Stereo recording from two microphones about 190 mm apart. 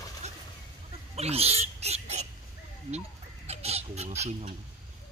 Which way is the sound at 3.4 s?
35° right (ahead or behind).